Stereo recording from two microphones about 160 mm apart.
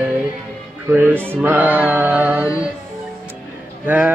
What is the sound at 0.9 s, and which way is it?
Male singing, 10° right (ahead or behind).